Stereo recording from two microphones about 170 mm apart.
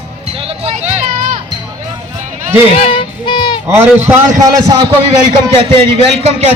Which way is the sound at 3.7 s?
15° right (ahead or behind).